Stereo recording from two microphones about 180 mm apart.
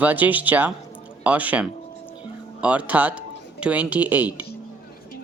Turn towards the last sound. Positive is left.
turn(degrees=-10)  # may be behind; listen again after turning